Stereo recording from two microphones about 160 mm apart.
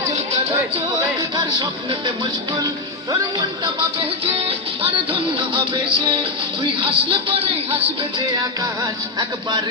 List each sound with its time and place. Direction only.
1.5 s speech: 25° right (ahead or behind)
4.3 s music: 35° right (ahead or behind)
5.5 s speech: 30° right (ahead or behind)
8.8 s speech: 25° right (ahead or behind)